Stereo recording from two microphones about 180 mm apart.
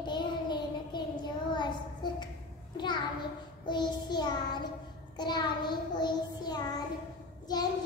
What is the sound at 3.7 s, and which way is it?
Child singing, 25° left (ahead or behind).